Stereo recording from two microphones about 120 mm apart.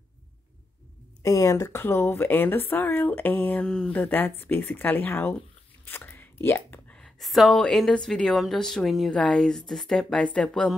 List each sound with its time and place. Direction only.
1.2 s speech: 25° left (ahead or behind)
5.9 s a sound: 15° left (ahead or behind)
7.0 s a woman's voice: centre (ahead or behind)